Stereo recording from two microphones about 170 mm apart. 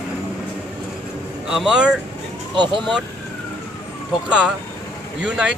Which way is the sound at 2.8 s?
Centre (ahead or behind).